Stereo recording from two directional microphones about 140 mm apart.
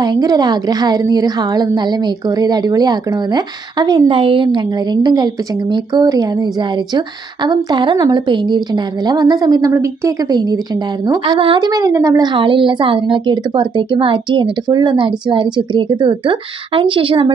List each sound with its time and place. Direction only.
0.0 s a woman's voice: 30° right (ahead or behind)
11.3 s a woman's voice: 40° right (ahead or behind)